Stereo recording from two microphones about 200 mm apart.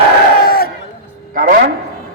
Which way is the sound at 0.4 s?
50° left (ahead or behind).